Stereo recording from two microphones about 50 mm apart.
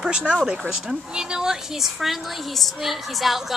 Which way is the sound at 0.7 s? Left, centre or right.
Centre.